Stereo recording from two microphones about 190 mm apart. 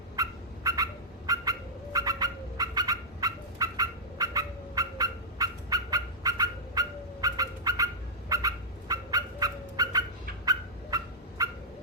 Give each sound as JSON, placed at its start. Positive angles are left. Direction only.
{"t": 0.2, "sound": "fowl", "side_deg": -20}
{"t": 1.3, "sound": "bird", "side_deg": -20}
{"t": 8.3, "sound": "dog", "side_deg": -20}
{"t": 10.4, "sound": "fowl", "side_deg": -20}